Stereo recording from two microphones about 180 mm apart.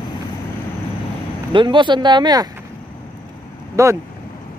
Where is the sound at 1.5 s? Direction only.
25° right (ahead or behind).